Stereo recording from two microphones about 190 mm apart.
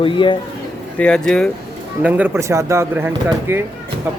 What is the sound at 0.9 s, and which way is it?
Speech, 5° left (ahead or behind).